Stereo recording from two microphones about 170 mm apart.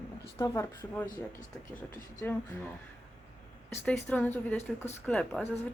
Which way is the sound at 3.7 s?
15° left (ahead or behind).